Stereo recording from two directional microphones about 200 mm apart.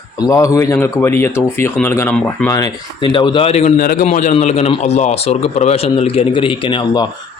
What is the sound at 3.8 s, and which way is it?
Speech, 45° left (ahead or behind).